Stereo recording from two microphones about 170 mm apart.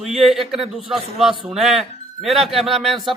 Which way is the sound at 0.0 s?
Centre (ahead or behind).